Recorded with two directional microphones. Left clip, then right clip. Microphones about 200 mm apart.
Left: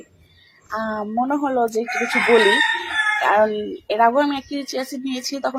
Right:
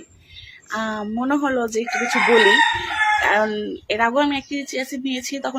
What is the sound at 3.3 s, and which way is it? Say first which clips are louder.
Speech: left 2 dB; 15° right (ahead or behind).